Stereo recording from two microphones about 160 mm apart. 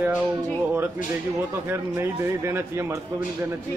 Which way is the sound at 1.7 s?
15° right (ahead or behind).